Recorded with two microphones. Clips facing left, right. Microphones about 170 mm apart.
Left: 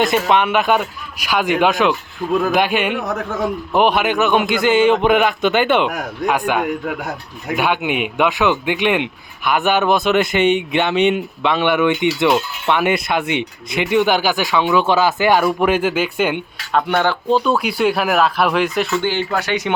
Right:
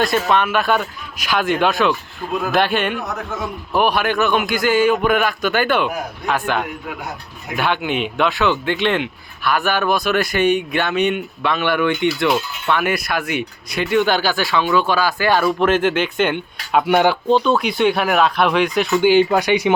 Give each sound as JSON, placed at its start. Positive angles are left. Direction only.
{"t": 0.0, "sound": "speech", "side_deg": 20}
{"t": 16.7, "sound": "speech", "side_deg": -10}
{"t": 17.2, "sound": "speech", "side_deg": 5}
{"t": 18.9, "sound": "speech", "side_deg": -15}